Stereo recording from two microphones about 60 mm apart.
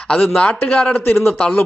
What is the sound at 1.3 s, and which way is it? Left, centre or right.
Speech, left.